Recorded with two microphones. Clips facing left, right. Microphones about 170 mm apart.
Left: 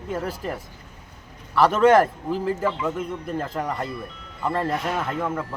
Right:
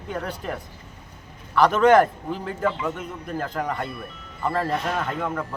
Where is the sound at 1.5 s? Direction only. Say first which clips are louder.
Even; centre (ahead or behind).